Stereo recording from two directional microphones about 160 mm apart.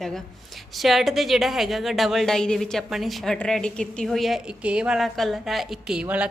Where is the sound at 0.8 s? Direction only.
Centre (ahead or behind).